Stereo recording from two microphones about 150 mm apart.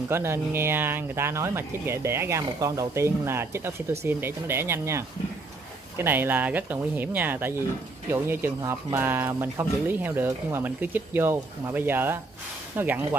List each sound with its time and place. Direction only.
0.1 s speech: 15° right (ahead or behind)